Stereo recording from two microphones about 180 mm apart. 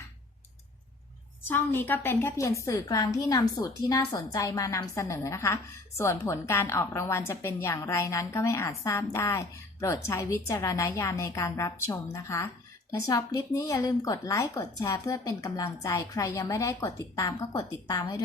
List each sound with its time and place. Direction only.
1.5 s a woman's voice: 10° left (ahead or behind)